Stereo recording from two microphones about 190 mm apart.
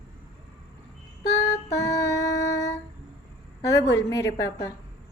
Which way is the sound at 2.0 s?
70° left (ahead or behind).